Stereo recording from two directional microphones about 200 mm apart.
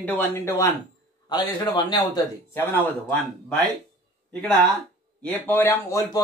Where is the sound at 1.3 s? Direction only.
20° left (ahead or behind).